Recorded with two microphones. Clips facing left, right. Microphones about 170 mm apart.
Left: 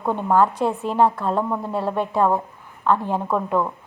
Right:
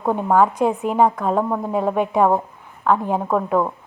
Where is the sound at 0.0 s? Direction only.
15° right (ahead or behind).